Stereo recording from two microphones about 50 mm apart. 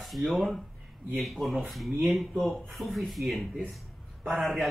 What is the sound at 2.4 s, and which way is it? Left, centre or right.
Speech, centre.